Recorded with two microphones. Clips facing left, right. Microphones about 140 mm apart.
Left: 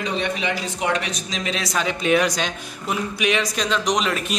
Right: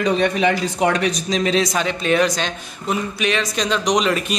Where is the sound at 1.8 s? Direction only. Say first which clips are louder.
Right 1 dB; 10° left (ahead or behind).